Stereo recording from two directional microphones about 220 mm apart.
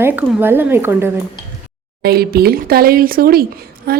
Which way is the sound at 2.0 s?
45° right (ahead or behind).